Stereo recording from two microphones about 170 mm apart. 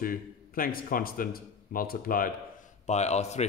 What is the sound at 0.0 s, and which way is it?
Speech, 55° left (ahead or behind).